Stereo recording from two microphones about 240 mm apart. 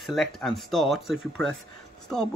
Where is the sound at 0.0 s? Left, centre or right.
Centre.